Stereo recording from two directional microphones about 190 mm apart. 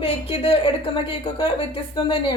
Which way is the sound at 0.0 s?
30° left (ahead or behind).